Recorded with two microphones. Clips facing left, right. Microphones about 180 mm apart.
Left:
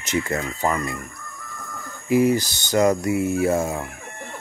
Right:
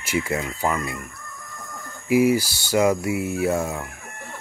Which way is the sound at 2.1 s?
5° right (ahead or behind).